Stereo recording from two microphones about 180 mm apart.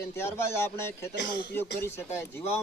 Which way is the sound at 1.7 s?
15° left (ahead or behind).